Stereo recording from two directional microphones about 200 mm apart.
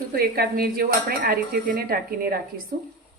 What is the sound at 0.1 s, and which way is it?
Speech, 50° right (ahead or behind).